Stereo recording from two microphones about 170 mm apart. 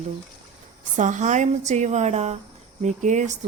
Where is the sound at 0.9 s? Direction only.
45° right (ahead or behind).